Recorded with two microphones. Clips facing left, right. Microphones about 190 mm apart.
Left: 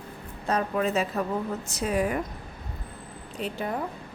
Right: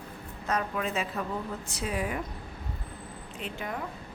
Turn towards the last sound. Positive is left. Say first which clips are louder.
# left 6 dB
turn(degrees=35)  # may be behind; listen again after turning